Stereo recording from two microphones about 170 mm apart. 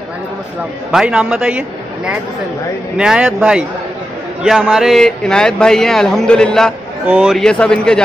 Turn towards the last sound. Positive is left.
turn(degrees=5)  # may be behind; listen again after turning